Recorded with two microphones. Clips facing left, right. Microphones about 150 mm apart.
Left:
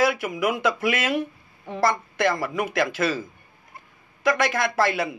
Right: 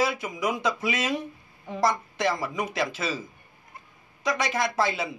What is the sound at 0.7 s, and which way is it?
Speech, 70° left (ahead or behind).